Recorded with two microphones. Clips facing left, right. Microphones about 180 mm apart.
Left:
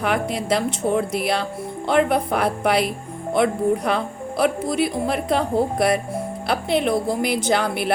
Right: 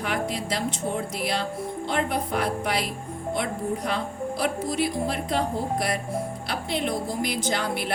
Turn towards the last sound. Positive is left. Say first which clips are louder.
# left 6 dB
turn(degrees=65)  # may be behind; listen again after turning